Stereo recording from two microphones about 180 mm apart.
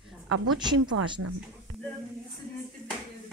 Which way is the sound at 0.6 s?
25° right (ahead or behind).